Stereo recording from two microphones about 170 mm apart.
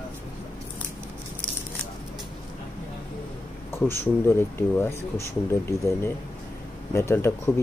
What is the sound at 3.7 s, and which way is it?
Speech, 15° left (ahead or behind).